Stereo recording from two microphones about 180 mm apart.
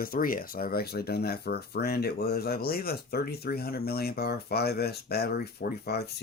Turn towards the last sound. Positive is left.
turn(degrees=65)  # may be behind; listen again after turning